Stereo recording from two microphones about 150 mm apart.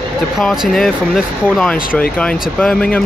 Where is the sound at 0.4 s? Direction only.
Centre (ahead or behind).